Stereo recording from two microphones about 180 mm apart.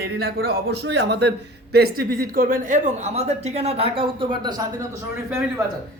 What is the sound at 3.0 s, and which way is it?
Speech, 35° right (ahead or behind).